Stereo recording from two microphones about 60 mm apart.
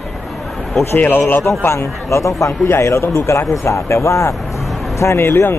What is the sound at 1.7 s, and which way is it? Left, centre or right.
Speech, left.